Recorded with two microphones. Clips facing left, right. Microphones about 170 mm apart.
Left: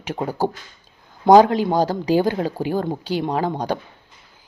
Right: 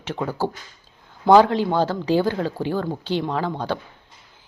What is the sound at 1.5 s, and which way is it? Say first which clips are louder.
A woman's voice: left 2 dB; 10° left (ahead or behind).